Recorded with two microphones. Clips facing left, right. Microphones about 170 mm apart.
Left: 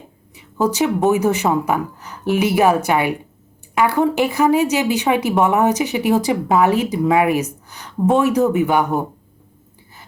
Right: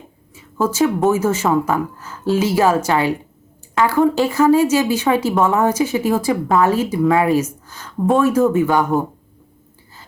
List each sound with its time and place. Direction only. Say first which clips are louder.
0.7 s speech: right 1 dB; 15° left (ahead or behind)